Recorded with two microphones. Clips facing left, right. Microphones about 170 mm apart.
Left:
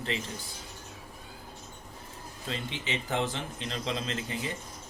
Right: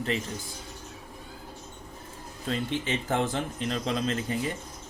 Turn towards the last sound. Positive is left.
turn(degrees=-45)  # may be behind; listen again after turning